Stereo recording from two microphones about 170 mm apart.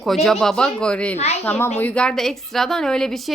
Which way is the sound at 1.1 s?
40° left (ahead or behind).